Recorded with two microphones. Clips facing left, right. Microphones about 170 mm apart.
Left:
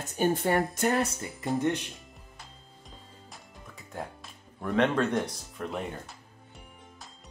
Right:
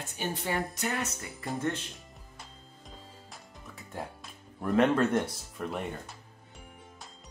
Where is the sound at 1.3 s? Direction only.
20° left (ahead or behind).